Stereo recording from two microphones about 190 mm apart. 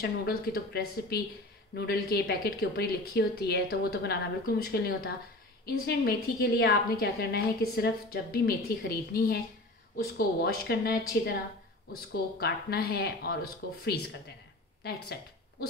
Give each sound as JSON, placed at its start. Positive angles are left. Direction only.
{"t": 0.0, "sound": "a woman's voice", "side_deg": 55}